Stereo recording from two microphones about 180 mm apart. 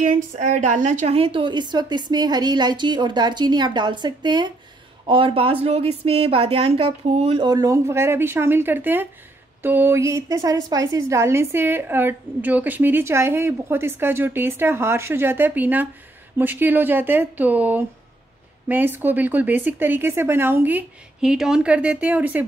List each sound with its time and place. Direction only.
0.0 s a woman's voice: 45° right (ahead or behind); by 22.5 s 10° right (ahead or behind)